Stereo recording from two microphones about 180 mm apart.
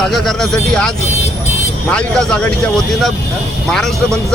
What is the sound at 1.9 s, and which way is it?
Speech, 5° left (ahead or behind).